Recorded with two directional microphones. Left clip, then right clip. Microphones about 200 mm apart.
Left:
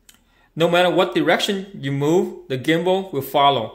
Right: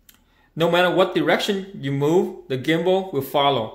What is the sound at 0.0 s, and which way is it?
Speech, 10° left (ahead or behind).